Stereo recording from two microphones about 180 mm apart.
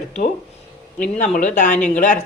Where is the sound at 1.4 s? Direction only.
45° left (ahead or behind).